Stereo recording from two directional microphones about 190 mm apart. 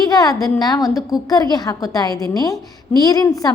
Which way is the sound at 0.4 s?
20° left (ahead or behind).